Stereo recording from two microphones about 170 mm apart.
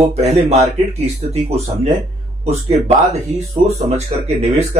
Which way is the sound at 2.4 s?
40° right (ahead or behind).